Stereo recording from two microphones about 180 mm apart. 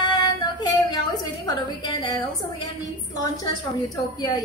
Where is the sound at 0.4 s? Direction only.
25° left (ahead or behind).